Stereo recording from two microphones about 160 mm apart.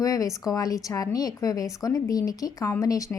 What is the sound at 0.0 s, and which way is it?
A woman's voice, 20° left (ahead or behind).